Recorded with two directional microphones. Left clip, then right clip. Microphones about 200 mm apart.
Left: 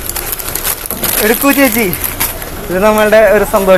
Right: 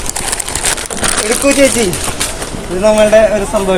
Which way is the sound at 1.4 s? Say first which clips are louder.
Right 2 dB; 45° left (ahead or behind).